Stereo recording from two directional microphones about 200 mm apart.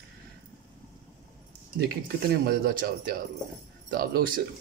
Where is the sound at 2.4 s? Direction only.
50° right (ahead or behind).